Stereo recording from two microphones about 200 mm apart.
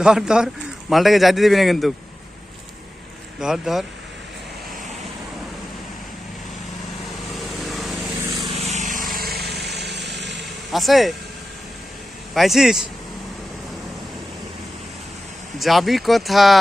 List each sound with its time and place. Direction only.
0.0 s a man's voice: 5° right (ahead or behind)
3.4 s a man's voice: centre (ahead or behind)
7.7 s vehicle: centre (ahead or behind)
8.4 s vehicle: 30° right (ahead or behind)
9.1 s a sound: 50° right (ahead or behind)
10.7 s speech: centre (ahead or behind)
12.3 s a man's voice: centre (ahead or behind)
15.5 s a man's voice: centre (ahead or behind)